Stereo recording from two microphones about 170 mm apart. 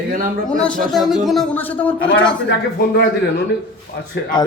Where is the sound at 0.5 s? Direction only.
5° left (ahead or behind).